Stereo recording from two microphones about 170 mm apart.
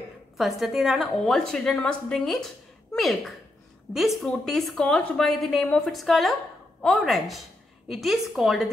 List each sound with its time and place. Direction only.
0.4 s a woman's voice: centre (ahead or behind)